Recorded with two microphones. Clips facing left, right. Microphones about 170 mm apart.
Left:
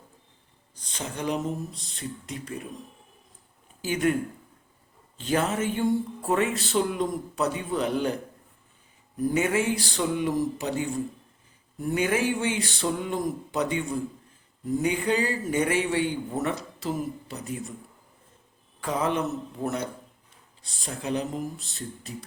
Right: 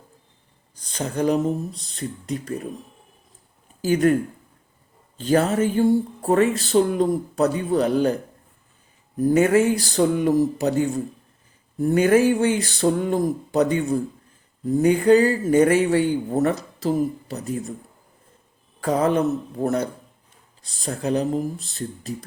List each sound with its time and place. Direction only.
0.8 s speech: 40° right (ahead or behind)
3.8 s speech: 40° right (ahead or behind)
5.1 s speech: 40° right (ahead or behind)
9.3 s speech: 45° right (ahead or behind)
18.8 s speech: 40° right (ahead or behind)